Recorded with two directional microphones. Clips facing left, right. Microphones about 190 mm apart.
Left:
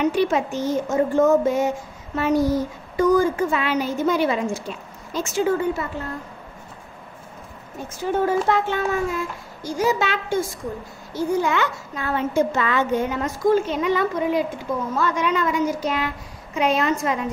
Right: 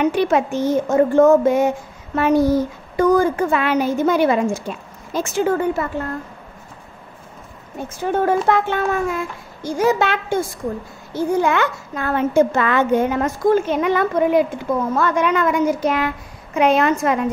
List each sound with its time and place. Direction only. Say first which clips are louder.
0.0 s a child's voice: right 3 dB; 60° right (ahead or behind)
8.0 s a child's voice: right 3 dB; 60° right (ahead or behind)